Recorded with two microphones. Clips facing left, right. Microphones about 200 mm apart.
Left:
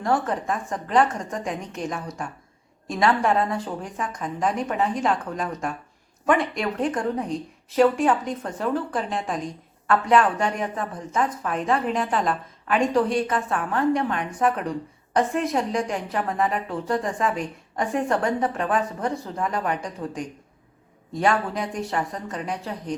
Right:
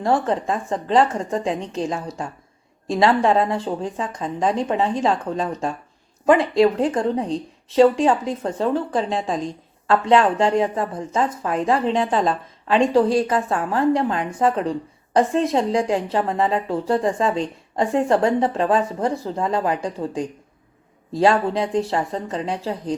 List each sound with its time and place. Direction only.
0.0 s a woman's voice: 25° right (ahead or behind)